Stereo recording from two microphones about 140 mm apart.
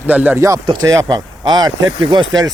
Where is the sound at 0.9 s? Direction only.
25° right (ahead or behind).